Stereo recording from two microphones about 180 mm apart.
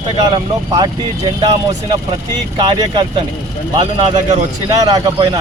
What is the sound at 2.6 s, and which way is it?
Speech, 25° right (ahead or behind).